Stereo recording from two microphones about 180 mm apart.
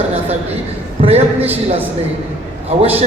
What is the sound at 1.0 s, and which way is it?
A man's voice, 35° right (ahead or behind).